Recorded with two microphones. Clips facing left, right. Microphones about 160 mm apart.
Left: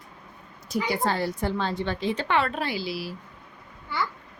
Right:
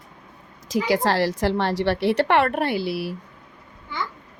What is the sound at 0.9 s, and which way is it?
A woman's voice, 85° right.